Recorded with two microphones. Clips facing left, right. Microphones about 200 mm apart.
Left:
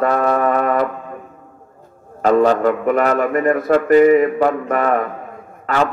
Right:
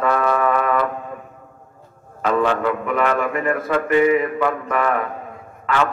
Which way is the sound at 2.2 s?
40° left (ahead or behind).